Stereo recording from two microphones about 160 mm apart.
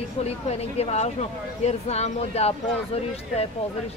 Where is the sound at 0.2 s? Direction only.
40° left (ahead or behind).